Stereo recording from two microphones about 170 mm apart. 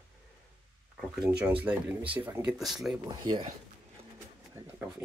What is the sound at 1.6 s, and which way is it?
Speech, 10° right (ahead or behind).